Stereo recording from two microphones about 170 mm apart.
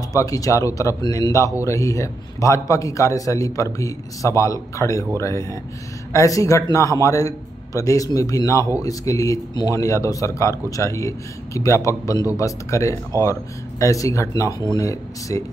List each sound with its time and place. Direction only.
0.1 s a man's voice: 20° left (ahead or behind)